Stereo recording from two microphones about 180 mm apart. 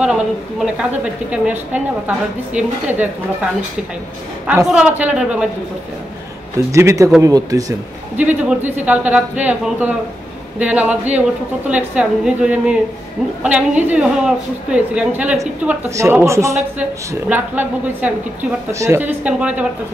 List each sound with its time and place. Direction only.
0.0 s a woman's voice: 5° right (ahead or behind)
4.6 s speech: 5° right (ahead or behind)
6.7 s a woman's voice: 15° right (ahead or behind)
8.2 s a woman's voice: 10° right (ahead or behind)